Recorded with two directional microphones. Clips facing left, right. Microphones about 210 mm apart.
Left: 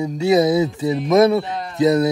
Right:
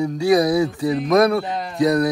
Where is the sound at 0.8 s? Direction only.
Centre (ahead or behind).